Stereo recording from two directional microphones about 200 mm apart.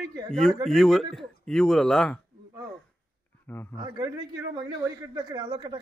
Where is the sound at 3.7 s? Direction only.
15° right (ahead or behind).